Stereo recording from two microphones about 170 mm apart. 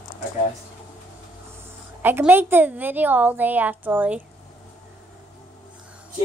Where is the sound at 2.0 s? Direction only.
10° right (ahead or behind).